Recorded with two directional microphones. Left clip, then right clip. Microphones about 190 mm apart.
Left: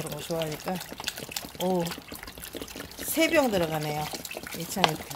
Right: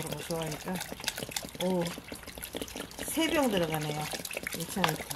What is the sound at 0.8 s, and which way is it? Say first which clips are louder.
Speech: left 1 dB; 10° right (ahead or behind).